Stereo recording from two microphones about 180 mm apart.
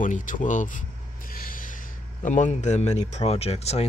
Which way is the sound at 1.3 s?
50° left (ahead or behind).